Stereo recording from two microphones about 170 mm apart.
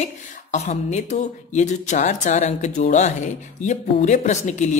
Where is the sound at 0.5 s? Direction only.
40° left (ahead or behind).